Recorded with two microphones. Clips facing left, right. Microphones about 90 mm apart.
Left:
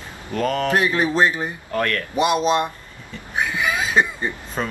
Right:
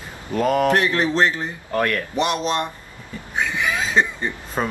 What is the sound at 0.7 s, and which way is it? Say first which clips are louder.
Speech: right 1 dB; 15° left (ahead or behind).